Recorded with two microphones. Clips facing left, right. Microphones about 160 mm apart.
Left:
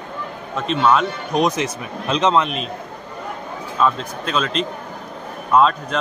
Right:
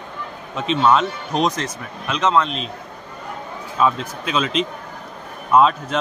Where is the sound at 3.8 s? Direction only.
10° right (ahead or behind).